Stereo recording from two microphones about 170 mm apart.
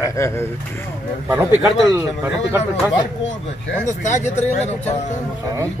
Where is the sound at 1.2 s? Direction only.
10° right (ahead or behind).